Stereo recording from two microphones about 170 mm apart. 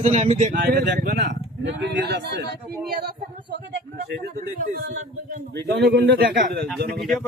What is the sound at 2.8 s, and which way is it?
Speech, 60° right (ahead or behind).